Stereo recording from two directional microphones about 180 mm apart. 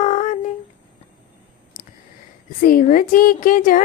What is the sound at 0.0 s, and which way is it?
Humming, 40° left (ahead or behind).